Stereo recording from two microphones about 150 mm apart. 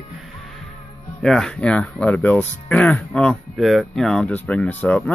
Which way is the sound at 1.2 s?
5° left (ahead or behind).